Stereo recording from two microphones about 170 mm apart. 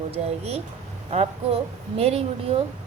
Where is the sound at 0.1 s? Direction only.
35° right (ahead or behind).